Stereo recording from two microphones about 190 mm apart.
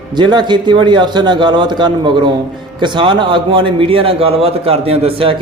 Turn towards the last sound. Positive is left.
turn(degrees=-30)  # may be behind; listen again after turning